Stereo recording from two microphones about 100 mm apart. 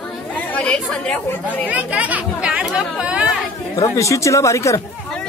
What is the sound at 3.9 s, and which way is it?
Speech, 30° left (ahead or behind).